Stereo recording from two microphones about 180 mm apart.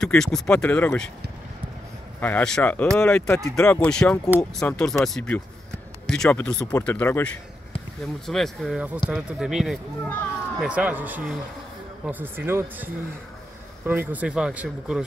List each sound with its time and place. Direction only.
0.0 s speech: 5° left (ahead or behind)
2.1 s speech: 10° left (ahead or behind)
8.3 s speech: centre (ahead or behind)
10.0 s speech: 10° left (ahead or behind)
10.6 s speech: 10° right (ahead or behind)